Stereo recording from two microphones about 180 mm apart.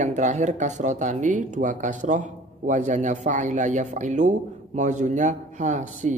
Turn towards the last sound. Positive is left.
turn(degrees=-40)  # may be behind; listen again after turning